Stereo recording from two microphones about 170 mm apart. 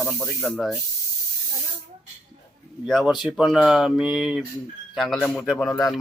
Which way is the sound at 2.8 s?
Centre (ahead or behind).